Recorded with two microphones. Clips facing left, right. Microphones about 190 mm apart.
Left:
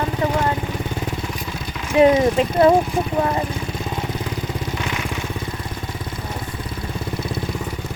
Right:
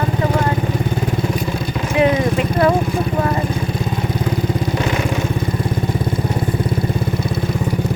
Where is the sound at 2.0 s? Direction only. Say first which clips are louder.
Left 2 dB; 30° left (ahead or behind).